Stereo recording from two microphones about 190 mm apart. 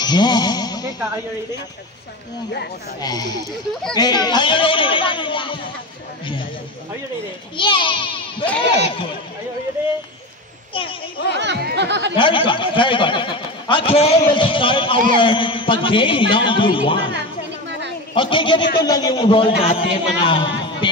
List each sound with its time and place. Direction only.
0.0 s a sound: 20° left (ahead or behind)
0.9 s speech: 15° right (ahead or behind)
3.0 s speech: 20° left (ahead or behind)
7.5 s a child's voice: 25° left (ahead or behind)
9.8 s speech: 10° right (ahead or behind)
10.7 s children playing: 25° left (ahead or behind)
11.3 s speech: 65° right (ahead or behind)
12.2 s speech: 25° left (ahead or behind)
17.6 s a sound: 65° right (ahead or behind)
18.1 s speech: 25° left (ahead or behind)